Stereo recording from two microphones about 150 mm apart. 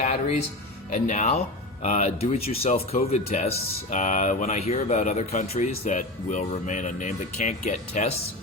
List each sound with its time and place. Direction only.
0.0 s music: 50° left (ahead or behind)
0.9 s speech: 55° left (ahead or behind)